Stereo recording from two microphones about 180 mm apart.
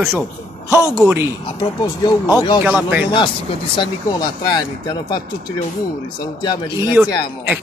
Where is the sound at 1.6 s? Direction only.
25° left (ahead or behind).